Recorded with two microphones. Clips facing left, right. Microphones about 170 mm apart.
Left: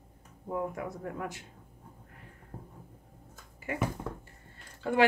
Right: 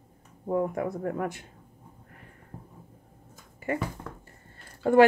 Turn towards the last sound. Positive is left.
turn(degrees=-45)  # may be behind; listen again after turning